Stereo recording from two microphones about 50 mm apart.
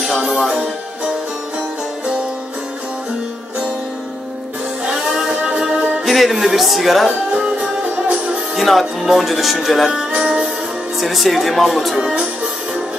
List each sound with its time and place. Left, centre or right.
0.1 s music: centre
4.8 s music: centre
5.3 s music: right
6.0 s speech: centre
7.8 s music: right
8.5 s speech: centre
10.2 s music: centre
11.0 s speech: centre